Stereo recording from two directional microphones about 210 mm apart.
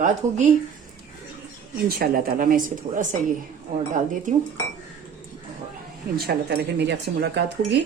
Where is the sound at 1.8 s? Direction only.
45° right (ahead or behind).